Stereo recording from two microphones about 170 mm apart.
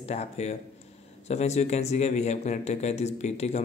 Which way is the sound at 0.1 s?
40° left (ahead or behind).